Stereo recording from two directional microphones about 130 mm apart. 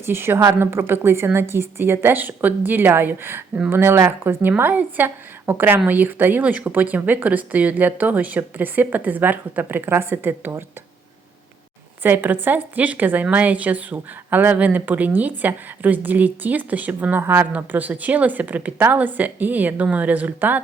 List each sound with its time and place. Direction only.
0.0 s speech: 15° right (ahead or behind)
12.0 s speech: 15° right (ahead or behind)